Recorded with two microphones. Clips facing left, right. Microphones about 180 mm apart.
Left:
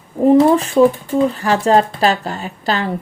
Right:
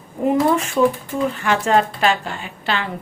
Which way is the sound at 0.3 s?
30° left (ahead or behind).